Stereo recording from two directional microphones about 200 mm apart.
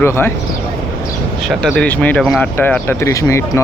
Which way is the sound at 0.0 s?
10° left (ahead or behind).